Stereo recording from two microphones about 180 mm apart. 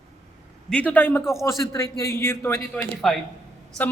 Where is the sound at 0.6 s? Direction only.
5° left (ahead or behind).